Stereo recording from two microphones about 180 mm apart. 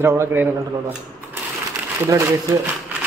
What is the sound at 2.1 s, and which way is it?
Speech, 15° right (ahead or behind).